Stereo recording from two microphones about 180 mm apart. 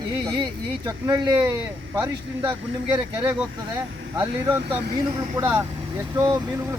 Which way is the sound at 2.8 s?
25° right (ahead or behind).